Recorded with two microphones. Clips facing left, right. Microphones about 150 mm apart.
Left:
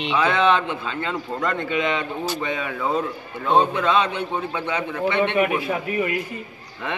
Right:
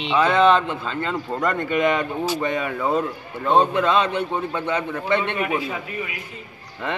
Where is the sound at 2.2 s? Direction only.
5° right (ahead or behind).